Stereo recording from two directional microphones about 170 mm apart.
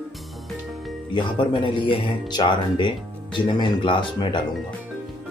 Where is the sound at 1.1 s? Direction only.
25° left (ahead or behind).